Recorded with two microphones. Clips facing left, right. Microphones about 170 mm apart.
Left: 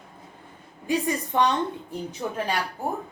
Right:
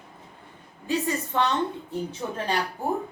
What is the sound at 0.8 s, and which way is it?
Speech, 15° left (ahead or behind).